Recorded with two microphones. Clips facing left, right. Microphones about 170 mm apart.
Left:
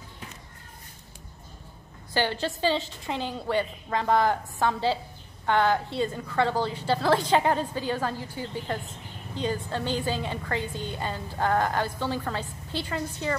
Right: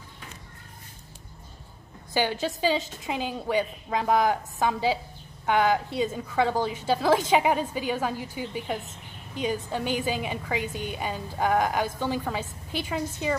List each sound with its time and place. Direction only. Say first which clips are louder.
2.4 s a woman's voice: right 1 dB; 10° right (ahead or behind)